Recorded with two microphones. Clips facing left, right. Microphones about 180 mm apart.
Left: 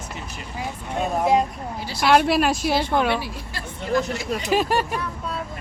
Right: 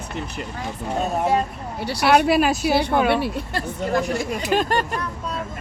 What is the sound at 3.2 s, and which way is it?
Speech, 60° right (ahead or behind).